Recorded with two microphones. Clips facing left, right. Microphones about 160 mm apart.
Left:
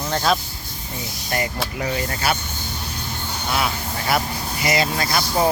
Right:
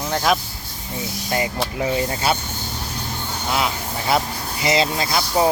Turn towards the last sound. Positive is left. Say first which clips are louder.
# right 1 dB
turn(degrees=-20)  # may be behind; listen again after turning